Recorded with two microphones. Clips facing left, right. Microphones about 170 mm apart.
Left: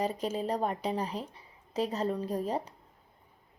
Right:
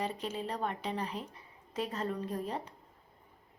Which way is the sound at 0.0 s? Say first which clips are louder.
Left 5 dB; 45° left (ahead or behind).